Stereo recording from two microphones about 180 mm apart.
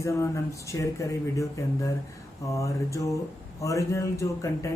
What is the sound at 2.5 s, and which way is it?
Speech, 15° left (ahead or behind).